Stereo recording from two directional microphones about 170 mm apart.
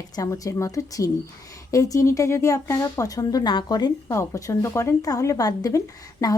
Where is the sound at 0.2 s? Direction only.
20° left (ahead or behind).